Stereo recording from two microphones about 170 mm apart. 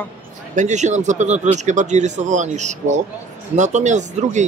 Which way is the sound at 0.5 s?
45° right (ahead or behind).